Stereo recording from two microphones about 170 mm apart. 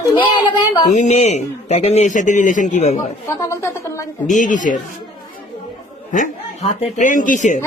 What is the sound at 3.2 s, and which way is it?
Speech, 15° left (ahead or behind).